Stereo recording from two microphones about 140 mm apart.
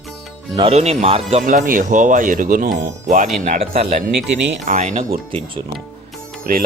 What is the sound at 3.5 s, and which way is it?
Speech, 50° right (ahead or behind).